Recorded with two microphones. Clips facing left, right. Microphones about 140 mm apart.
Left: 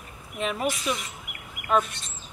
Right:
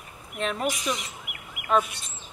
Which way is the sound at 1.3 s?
35° left (ahead or behind).